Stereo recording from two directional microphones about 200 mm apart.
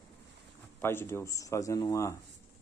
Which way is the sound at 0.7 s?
10° left (ahead or behind).